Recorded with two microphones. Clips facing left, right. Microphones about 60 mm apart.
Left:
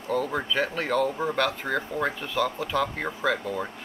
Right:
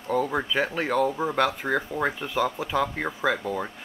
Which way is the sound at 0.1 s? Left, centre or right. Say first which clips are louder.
Right 2 dB; centre.